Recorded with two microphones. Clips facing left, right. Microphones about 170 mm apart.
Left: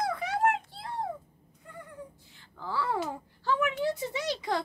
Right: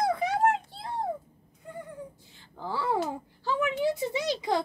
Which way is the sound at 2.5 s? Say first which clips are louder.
Right 2 dB; 20° right (ahead or behind).